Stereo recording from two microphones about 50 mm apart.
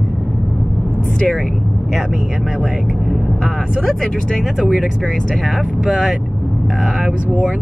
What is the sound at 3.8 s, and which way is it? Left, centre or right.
Speech, centre.